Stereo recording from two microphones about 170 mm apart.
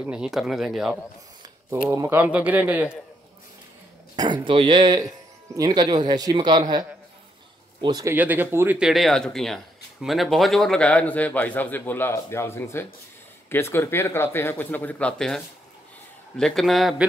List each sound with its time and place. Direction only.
0.0 s speech: 5° right (ahead or behind)
1.9 s speech: 15° right (ahead or behind)
4.5 s speech: 30° right (ahead or behind)
7.8 s a man's voice: 20° right (ahead or behind); by 16.9 s centre (ahead or behind)